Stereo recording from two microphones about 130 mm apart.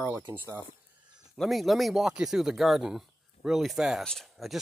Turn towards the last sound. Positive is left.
turn(degrees=0)  # may be behind; listen again after turning